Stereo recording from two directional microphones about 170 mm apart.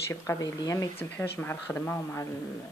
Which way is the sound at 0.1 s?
15° left (ahead or behind).